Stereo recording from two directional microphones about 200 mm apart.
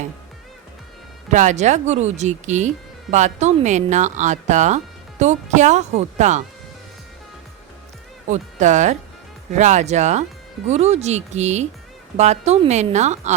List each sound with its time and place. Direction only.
1.3 s speech: 35° right (ahead or behind)
8.3 s speech: 35° right (ahead or behind)